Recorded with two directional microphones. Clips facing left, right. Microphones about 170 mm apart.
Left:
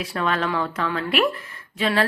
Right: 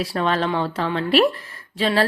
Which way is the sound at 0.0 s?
35° right (ahead or behind).